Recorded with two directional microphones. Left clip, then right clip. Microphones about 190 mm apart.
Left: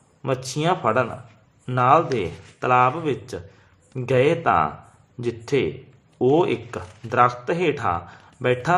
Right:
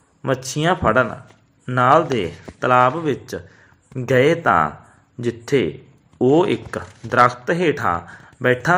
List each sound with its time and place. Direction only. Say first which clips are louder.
0.2 s speech: right 3 dB; 15° right (ahead or behind)